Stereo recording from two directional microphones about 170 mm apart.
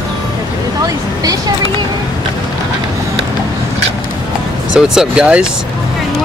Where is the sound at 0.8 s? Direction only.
20° right (ahead or behind).